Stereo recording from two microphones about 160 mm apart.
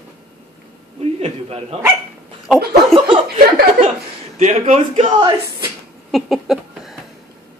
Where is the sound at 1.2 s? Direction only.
40° right (ahead or behind).